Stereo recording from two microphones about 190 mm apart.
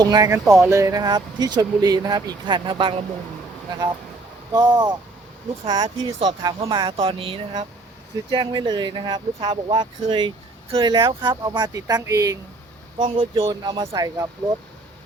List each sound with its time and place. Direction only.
0.0 s speech: 20° right (ahead or behind)
4.5 s speech: 25° right (ahead or behind)
13.1 s speech: 30° right (ahead or behind)